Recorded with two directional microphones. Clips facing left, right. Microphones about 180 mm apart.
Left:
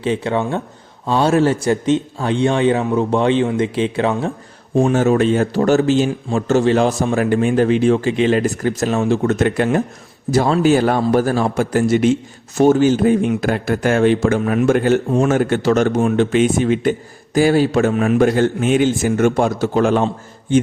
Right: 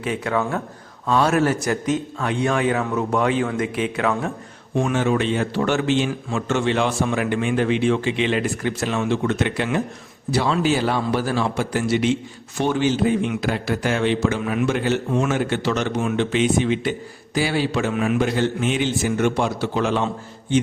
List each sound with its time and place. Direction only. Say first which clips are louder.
0.0 s speech: left 4 dB; 30° left (ahead or behind)
4.7 s a man's voice: left 6 dB; 40° left (ahead or behind)